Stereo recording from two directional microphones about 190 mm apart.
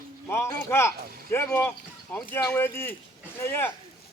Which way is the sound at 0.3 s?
15° left (ahead or behind).